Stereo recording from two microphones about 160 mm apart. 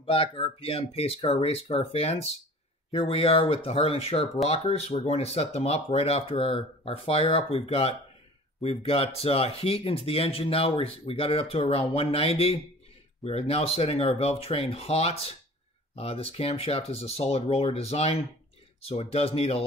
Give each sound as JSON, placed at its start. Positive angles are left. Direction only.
{"t": 0.0, "sound": "speech", "side_deg": 35}